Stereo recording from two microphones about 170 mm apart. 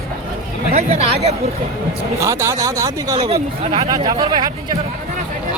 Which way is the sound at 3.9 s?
25° right (ahead or behind).